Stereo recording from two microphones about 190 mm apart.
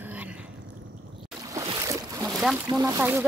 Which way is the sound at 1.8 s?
15° right (ahead or behind).